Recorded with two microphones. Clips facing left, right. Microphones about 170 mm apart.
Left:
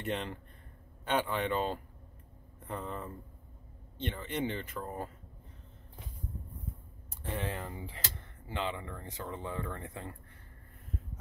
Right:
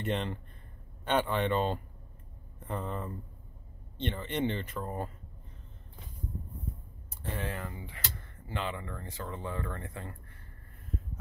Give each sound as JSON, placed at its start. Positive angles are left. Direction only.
{"t": 0.0, "sound": "speech", "side_deg": 5}
{"t": 7.2, "sound": "speech", "side_deg": 20}
{"t": 8.5, "sound": "speech", "side_deg": 15}